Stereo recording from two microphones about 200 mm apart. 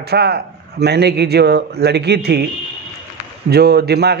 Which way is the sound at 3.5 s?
55° right (ahead or behind).